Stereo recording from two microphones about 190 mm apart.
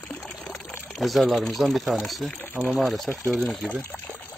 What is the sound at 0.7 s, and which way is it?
Speech, centre (ahead or behind).